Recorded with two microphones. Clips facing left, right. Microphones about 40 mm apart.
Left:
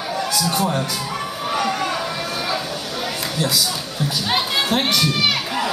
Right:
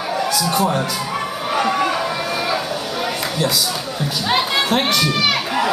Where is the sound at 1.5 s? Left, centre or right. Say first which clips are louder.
Right 4 dB; centre.